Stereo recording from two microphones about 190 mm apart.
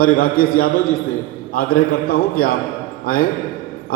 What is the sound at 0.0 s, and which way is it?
A man's voice, 50° left (ahead or behind).